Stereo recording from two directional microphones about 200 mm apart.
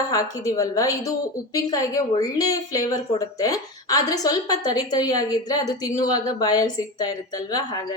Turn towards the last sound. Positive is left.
turn(degrees=20)  # may be behind; listen again after turning